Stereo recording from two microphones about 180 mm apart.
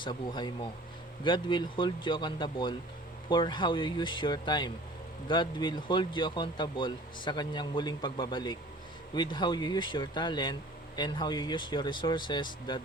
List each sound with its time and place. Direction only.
0.0 s speech: 25° left (ahead or behind)